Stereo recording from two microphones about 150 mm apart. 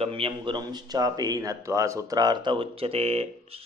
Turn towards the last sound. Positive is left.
turn(degrees=-45)  # may be behind; listen again after turning